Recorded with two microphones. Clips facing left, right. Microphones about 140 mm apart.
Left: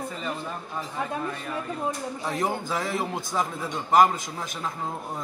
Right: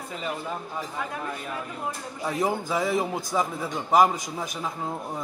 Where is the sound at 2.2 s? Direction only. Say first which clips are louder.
Right 2 dB; 10° right (ahead or behind).